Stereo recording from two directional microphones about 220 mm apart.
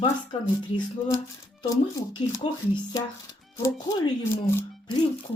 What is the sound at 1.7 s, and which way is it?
Speech, 15° left (ahead or behind).